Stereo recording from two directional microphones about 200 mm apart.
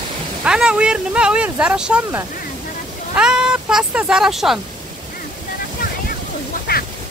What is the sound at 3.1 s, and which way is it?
Cat, 5° right (ahead or behind).